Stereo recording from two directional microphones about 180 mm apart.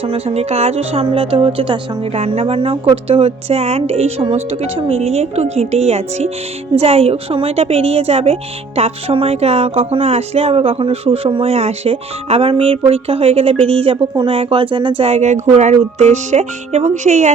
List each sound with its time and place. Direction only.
0.1 s speech: 35° right (ahead or behind)